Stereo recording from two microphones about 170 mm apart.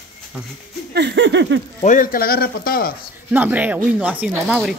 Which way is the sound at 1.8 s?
55° left (ahead or behind).